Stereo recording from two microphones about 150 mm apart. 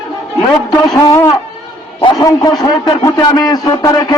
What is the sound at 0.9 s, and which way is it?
A man's voice, 20° left (ahead or behind).